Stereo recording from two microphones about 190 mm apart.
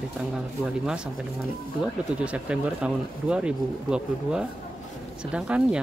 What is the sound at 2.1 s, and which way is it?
Speech, 5° right (ahead or behind).